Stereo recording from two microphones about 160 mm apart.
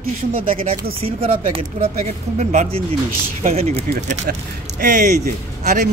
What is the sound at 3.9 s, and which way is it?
Speech, 65° right (ahead or behind).